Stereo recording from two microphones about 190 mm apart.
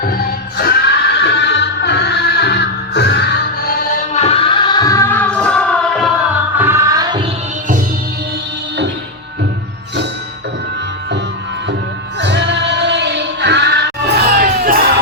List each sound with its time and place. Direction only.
0.5 s music: 55° left (ahead or behind)
4.1 s music: 35° left (ahead or behind); by 6.1 s 5° left (ahead or behind)
6.6 s music: 15° right (ahead or behind)
12.2 s music: 65° right (ahead or behind)
14.3 s crowd: 50° right (ahead or behind)